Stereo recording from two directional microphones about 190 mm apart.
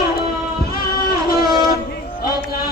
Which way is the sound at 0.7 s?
50° left (ahead or behind).